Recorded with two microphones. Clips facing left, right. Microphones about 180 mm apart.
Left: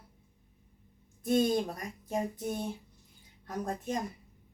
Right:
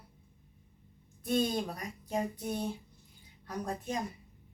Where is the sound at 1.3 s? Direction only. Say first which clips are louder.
Left 3 dB; 45° left (ahead or behind).